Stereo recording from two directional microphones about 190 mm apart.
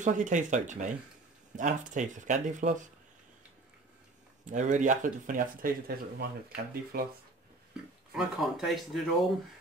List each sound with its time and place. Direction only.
0.0 s speech: 40° right (ahead or behind)
4.5 s speech: 40° right (ahead or behind)
7.7 s speech: centre (ahead or behind)